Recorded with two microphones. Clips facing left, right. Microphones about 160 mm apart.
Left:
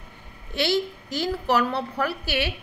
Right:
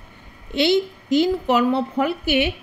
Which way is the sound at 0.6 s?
20° right (ahead or behind).